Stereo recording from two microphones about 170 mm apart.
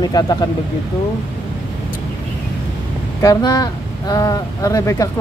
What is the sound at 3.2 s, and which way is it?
Speech, 20° left (ahead or behind).